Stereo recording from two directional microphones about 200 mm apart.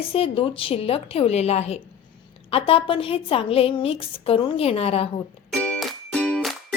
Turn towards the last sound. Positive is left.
turn(degrees=0)  # may be behind; listen again after turning